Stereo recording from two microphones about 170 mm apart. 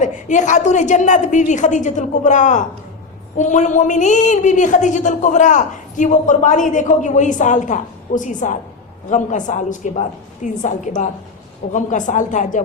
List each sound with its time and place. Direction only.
0.0 s a woman's voice: 45° left (ahead or behind)